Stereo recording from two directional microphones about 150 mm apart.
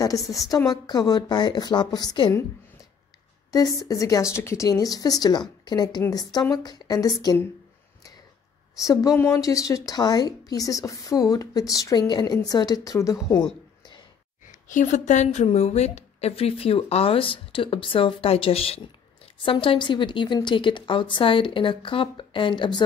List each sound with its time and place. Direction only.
0.0 s a woman's voice: 20° left (ahead or behind)
3.5 s a woman's voice: 25° left (ahead or behind)
8.8 s a woman's voice: 25° left (ahead or behind)
14.5 s a woman's voice: 60° left (ahead or behind); by 22.8 s 30° left (ahead or behind)